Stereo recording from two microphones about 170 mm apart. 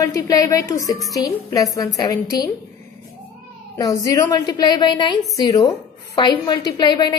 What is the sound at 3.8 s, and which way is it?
A woman's voice, 20° left (ahead or behind).